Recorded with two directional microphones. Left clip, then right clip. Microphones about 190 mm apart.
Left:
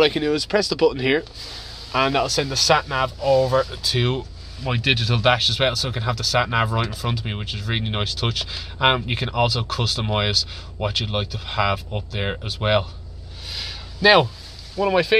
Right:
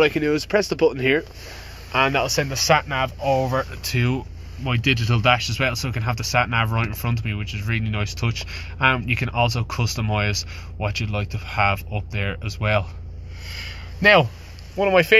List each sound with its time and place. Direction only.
0.0 s speech: centre (ahead or behind)
13.7 s a sound: 5° right (ahead or behind)
14.8 s speech: 15° right (ahead or behind)